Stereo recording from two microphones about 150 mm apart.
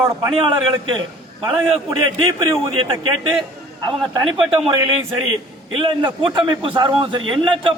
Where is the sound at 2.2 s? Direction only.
35° right (ahead or behind).